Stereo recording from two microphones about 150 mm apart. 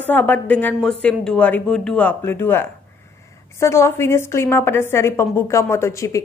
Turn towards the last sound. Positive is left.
turn(degrees=20)  # may be behind; listen again after turning